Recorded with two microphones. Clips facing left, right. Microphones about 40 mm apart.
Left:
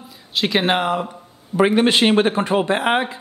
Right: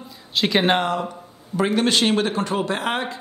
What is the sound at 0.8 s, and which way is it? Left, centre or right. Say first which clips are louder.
A man's voice: left 2 dB; centre.